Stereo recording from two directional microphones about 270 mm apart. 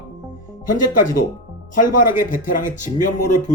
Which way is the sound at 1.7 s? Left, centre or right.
Left.